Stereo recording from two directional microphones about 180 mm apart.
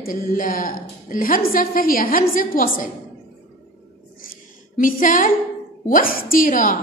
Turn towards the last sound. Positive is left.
turn(degrees=50)  # may be behind; listen again after turning